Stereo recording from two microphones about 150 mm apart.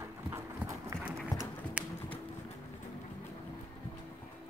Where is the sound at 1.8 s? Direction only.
5° right (ahead or behind).